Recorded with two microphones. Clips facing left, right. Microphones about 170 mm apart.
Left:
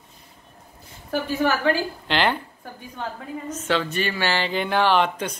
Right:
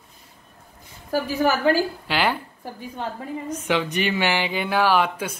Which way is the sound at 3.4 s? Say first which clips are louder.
Even; 15° right (ahead or behind).